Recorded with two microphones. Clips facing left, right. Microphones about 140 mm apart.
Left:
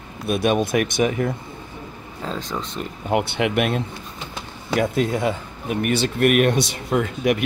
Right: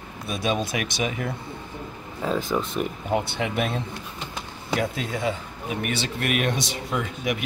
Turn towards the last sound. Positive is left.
turn(degrees=60)  # may be behind; listen again after turning